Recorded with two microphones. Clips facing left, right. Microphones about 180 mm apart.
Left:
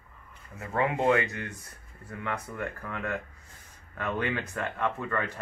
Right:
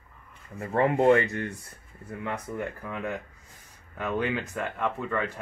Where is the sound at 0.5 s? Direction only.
35° right (ahead or behind).